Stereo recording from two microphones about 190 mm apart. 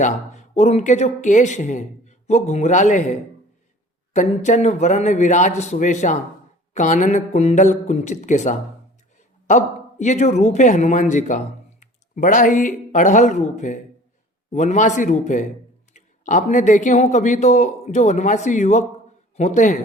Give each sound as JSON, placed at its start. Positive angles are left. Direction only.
{"t": 0.0, "sound": "speech", "side_deg": 40}